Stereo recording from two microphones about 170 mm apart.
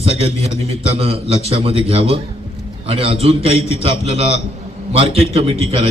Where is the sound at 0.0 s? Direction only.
35° right (ahead or behind).